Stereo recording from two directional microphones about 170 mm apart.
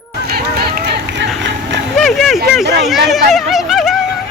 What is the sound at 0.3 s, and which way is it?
Run, 65° right (ahead or behind).